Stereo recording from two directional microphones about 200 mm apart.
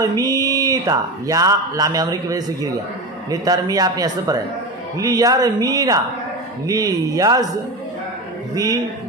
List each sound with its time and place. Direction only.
0.0 s a man's voice: 20° right (ahead or behind)